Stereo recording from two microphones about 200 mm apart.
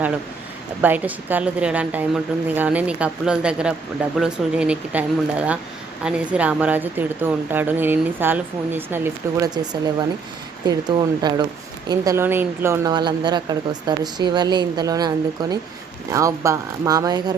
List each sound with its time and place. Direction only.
0.8 s a woman's voice: 10° right (ahead or behind)